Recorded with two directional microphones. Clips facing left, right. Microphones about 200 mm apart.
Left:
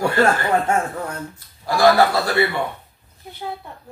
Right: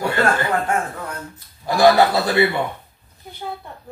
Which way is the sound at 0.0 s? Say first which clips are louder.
Left 2 dB; 25° left (ahead or behind).